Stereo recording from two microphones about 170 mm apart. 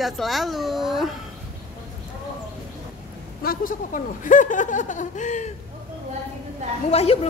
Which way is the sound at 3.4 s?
55° left (ahead or behind).